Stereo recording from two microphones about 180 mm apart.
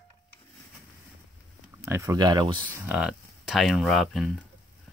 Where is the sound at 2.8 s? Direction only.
5° right (ahead or behind).